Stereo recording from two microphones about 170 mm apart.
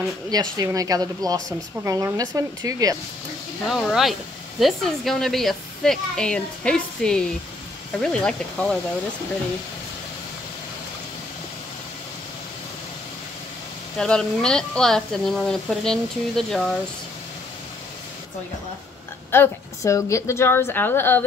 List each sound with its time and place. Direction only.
0.3 s a woman's voice: 20° right (ahead or behind)
3.6 s speech: centre (ahead or behind)
13.9 s speech: 5° left (ahead or behind)
19.3 s a woman's voice: 15° left (ahead or behind)